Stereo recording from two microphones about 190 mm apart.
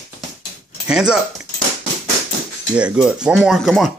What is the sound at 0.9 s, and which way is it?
Speech, 5° right (ahead or behind).